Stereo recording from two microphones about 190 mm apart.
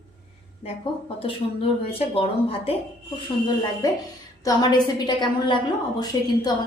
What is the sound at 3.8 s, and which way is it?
A woman's voice, 20° left (ahead or behind).